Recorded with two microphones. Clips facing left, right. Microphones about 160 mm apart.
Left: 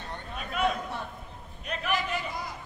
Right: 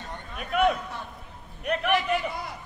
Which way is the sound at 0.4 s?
65° right (ahead or behind).